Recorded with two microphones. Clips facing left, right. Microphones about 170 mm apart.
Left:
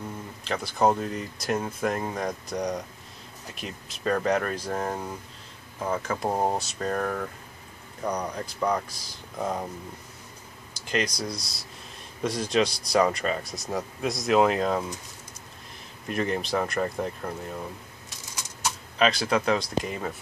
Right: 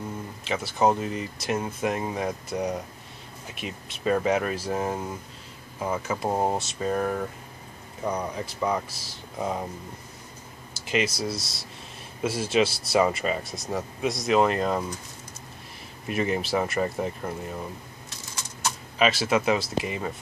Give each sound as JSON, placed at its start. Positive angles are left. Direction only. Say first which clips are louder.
{"t": 0.4, "sound": "speech", "louder": "even", "side_deg": 0}
{"t": 10.7, "sound": "speech", "louder": "right 2 dB", "side_deg": -5}
{"t": 16.1, "sound": "speech", "louder": "right 1 dB", "side_deg": -5}
{"t": 18.9, "sound": "speech", "louder": "right 1 dB", "side_deg": -5}